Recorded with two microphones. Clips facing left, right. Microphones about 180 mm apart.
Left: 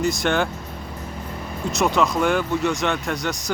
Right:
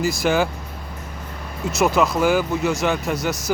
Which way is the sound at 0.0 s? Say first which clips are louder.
Right 2 dB; centre (ahead or behind).